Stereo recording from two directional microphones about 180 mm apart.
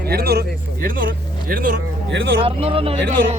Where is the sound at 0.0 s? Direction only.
60° right (ahead or behind).